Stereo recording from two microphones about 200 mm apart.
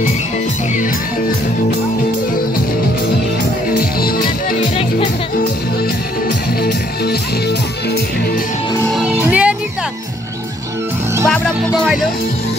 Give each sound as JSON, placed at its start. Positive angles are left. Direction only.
{"t": 3.7, "sound": "music", "side_deg": 45}
{"t": 8.9, "sound": "music", "side_deg": -5}
{"t": 11.2, "sound": "speech", "side_deg": 0}